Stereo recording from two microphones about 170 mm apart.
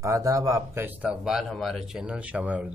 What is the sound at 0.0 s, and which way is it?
Speech, 20° right (ahead or behind).